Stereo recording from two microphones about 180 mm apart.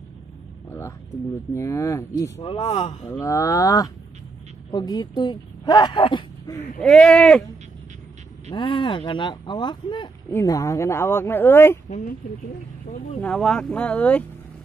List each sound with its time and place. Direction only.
0.7 s music: 15° left (ahead or behind)
1.5 s speech: 15° left (ahead or behind); by 3.1 s 40° left (ahead or behind)
3.1 s speech: 15° left (ahead or behind)
6.8 s speech: 5° left (ahead or behind)
8.5 s speech: 25° left (ahead or behind)
13.2 s speech: 5° left (ahead or behind)